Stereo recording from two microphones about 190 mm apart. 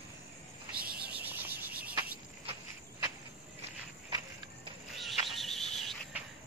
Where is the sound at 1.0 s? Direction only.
10° right (ahead or behind).